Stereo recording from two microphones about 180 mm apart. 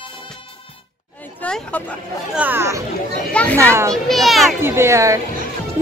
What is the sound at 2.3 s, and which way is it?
Speech, 10° right (ahead or behind).